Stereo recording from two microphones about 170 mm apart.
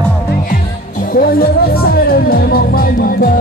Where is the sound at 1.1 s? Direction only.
60° left (ahead or behind).